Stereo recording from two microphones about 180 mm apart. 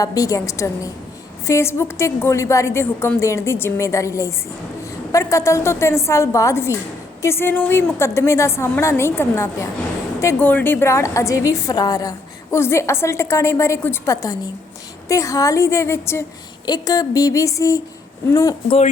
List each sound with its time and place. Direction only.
0.0 s a woman's voice: 20° left (ahead or behind)